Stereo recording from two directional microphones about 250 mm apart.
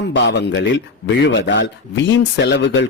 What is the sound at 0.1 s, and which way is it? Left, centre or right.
A man's voice, left.